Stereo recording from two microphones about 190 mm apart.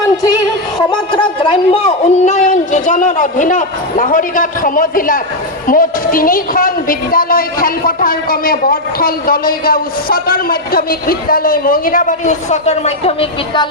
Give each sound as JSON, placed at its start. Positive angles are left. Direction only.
{"t": 1.4, "sound": "a woman's voice", "side_deg": 30}